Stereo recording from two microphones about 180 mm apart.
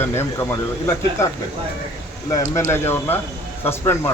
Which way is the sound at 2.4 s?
40° left (ahead or behind).